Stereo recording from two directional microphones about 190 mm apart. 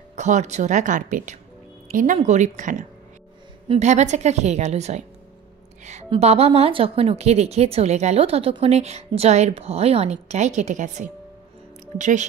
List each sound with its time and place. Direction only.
0.1 s a woman's voice: 40° right (ahead or behind)
6.0 s a woman's voice: 35° right (ahead or behind)